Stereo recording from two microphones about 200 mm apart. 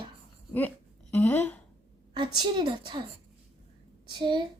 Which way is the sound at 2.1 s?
25° right (ahead or behind).